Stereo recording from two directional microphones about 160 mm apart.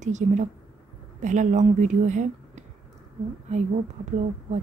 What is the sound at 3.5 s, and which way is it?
Speech, 45° right (ahead or behind).